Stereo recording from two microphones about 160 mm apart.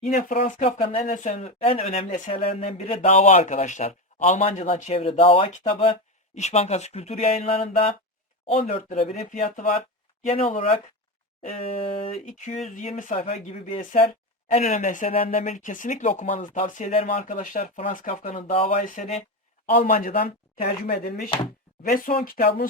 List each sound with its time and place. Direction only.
0.0 s speech: 55° left (ahead or behind)
0.6 s speech: 35° left (ahead or behind)
1.0 s speech: 50° left (ahead or behind)
10.2 s speech: 40° left (ahead or behind); by 16.0 s 55° left (ahead or behind)
16.0 s speech: 40° left (ahead or behind)
17.2 s speech: 55° left (ahead or behind)
18.3 s speech: 35° left (ahead or behind)
18.8 s speech: 55° left (ahead or behind)
20.8 s chopping: 70° left (ahead or behind)
21.8 s speech: 65° left (ahead or behind)